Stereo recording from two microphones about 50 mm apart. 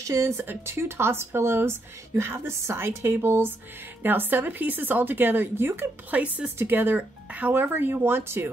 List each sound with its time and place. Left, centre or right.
0.0 s speech: right
0.4 s speech: right
6.0 s speech: right
6.6 s speech: right
7.0 s speech: right
7.5 s speech: right